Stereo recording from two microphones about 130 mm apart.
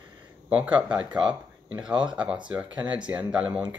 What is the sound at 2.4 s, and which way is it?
Speech, 10° right (ahead or behind).